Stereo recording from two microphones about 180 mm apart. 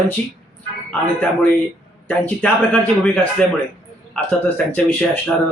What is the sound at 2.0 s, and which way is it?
Speech, 10° left (ahead or behind).